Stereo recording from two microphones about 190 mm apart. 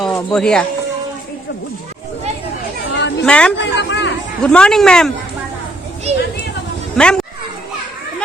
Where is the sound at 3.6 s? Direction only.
65° left (ahead or behind).